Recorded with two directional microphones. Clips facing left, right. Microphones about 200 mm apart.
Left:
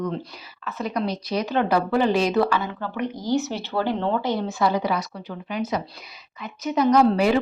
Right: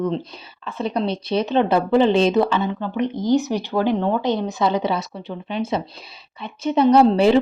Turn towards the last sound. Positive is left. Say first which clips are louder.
# right 4 dB
turn(degrees=-25)  # may be behind; listen again after turning